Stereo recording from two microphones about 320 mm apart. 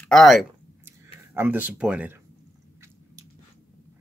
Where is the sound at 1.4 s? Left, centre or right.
Centre.